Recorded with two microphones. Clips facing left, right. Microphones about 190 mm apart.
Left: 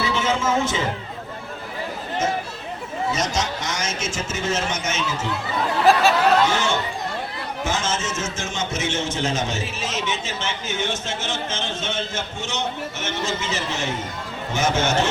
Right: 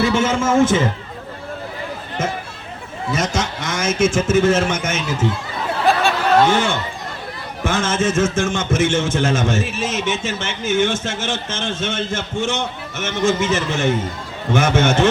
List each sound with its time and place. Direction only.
0.0 s music: 50° right (ahead or behind)
3.2 s a man's voice: 55° right (ahead or behind)
5.8 s a sound: centre (ahead or behind)
6.5 s a man's voice: 55° right (ahead or behind)